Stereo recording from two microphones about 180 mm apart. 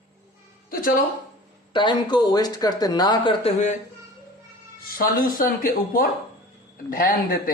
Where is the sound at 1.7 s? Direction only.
25° left (ahead or behind).